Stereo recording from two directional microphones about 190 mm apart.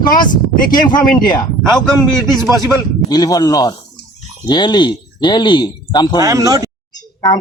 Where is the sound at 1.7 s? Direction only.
5° left (ahead or behind).